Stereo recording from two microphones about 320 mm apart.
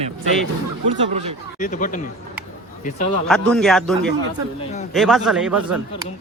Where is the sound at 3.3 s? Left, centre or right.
Centre.